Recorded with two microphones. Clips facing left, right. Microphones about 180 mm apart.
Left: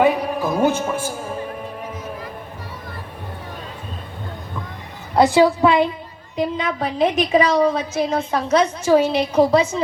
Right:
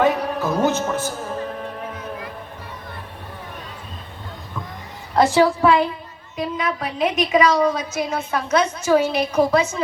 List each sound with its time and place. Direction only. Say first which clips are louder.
0.0 s music: left 2 dB; 15° left (ahead or behind)
5.1 s a woman's voice: left 2 dB; 15° left (ahead or behind); by 9.8 s 30° left (ahead or behind)